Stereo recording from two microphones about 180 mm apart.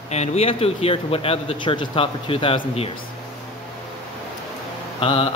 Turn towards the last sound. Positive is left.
turn(degrees=30)  # may be behind; listen again after turning